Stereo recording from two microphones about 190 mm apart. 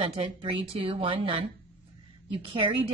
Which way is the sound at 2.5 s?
25° right (ahead or behind).